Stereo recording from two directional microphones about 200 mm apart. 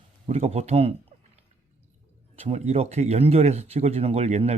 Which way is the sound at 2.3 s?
30° right (ahead or behind).